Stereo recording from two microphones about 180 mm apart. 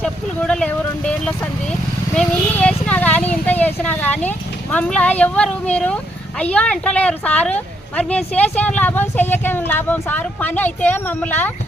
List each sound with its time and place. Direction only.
0.0 s speech: 5° left (ahead or behind)